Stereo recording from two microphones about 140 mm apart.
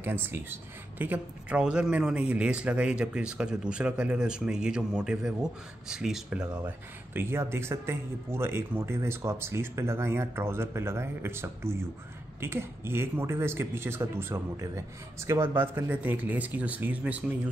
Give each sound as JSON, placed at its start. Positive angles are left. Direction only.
{"t": 0.0, "sound": "speech", "side_deg": -15}
{"t": 7.2, "sound": "speech", "side_deg": -15}